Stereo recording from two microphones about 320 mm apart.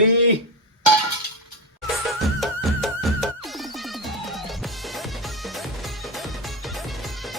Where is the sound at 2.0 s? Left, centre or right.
Centre.